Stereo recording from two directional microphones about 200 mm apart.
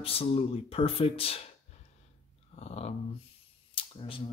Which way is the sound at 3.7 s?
25° left (ahead or behind).